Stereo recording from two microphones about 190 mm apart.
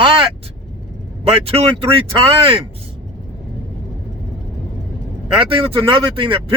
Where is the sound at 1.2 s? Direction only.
30° right (ahead or behind).